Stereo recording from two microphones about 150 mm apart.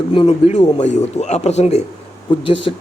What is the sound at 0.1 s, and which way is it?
A man's voice, 35° left (ahead or behind).